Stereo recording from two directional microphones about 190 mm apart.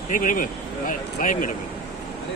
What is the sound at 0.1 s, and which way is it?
Speech, 45° left (ahead or behind).